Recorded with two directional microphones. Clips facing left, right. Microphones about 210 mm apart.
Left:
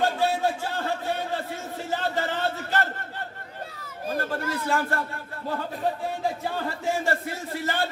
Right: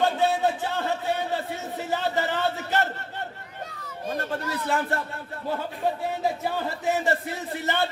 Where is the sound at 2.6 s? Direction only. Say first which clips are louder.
Right 1 dB; 20° right (ahead or behind).